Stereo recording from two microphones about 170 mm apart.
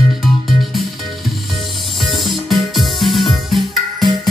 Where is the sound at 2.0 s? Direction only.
Centre (ahead or behind).